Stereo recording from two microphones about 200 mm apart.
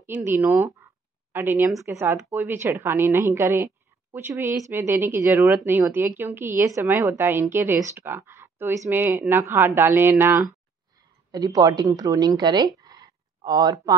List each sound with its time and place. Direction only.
0.0 s a woman's voice: 10° right (ahead or behind)